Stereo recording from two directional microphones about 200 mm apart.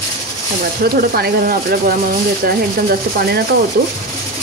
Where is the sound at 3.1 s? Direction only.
50° right (ahead or behind).